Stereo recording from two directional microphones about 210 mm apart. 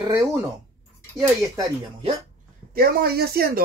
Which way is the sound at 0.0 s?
20° right (ahead or behind).